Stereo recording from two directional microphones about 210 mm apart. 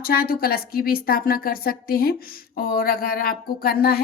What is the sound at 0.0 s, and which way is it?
A woman's voice, 45° left (ahead or behind).